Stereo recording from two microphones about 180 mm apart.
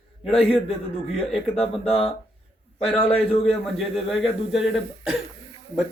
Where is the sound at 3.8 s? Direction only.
Centre (ahead or behind).